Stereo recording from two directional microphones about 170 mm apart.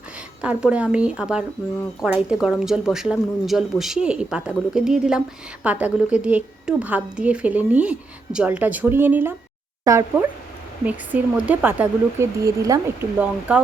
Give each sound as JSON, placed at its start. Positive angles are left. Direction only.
{"t": 0.4, "sound": "a woman's voice", "side_deg": -5}